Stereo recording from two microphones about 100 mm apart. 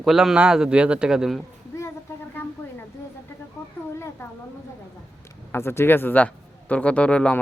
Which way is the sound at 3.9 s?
25° left (ahead or behind).